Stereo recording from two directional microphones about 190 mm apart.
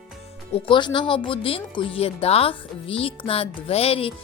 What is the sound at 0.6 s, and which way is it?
Speech, 25° left (ahead or behind).